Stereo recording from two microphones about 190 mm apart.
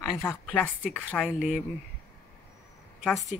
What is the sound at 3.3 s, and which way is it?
Speech, 5° right (ahead or behind).